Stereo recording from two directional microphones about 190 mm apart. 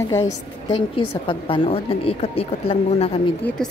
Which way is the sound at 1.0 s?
25° left (ahead or behind).